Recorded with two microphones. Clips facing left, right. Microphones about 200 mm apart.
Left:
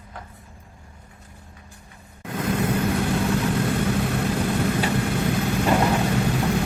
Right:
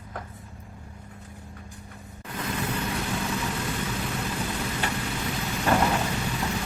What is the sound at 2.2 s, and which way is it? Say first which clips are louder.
Vehicle: left 7 dB; 55° left (ahead or behind).